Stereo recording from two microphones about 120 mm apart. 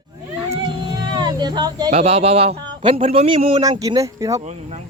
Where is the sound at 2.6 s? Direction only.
45° right (ahead or behind).